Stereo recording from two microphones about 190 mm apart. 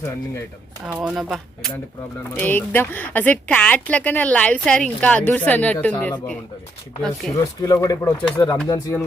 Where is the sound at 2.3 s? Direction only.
10° left (ahead or behind).